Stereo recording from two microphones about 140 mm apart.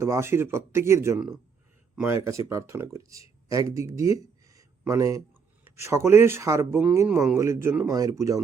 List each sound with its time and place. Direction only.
0.0 s speech: 20° right (ahead or behind)